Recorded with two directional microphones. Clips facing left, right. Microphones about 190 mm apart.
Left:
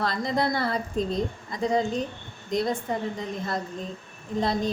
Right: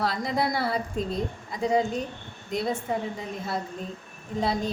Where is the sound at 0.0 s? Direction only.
5° right (ahead or behind).